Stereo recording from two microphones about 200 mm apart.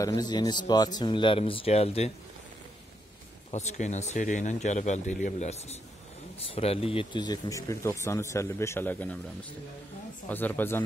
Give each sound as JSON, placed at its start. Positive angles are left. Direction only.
{"t": 0.0, "sound": "speech", "side_deg": 20}
{"t": 3.5, "sound": "speech", "side_deg": 35}